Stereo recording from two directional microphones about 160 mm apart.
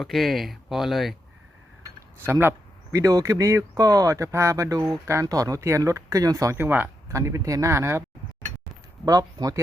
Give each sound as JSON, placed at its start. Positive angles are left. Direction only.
{"t": 0.0, "sound": "speech", "side_deg": 0}
{"t": 2.2, "sound": "speech", "side_deg": -15}
{"t": 9.0, "sound": "speech", "side_deg": -25}